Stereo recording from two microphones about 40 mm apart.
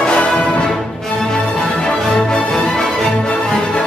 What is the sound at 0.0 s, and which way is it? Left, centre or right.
Music, left.